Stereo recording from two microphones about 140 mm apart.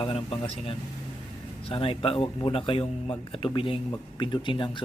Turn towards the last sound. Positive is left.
turn(degrees=35)  # may be behind; listen again after turning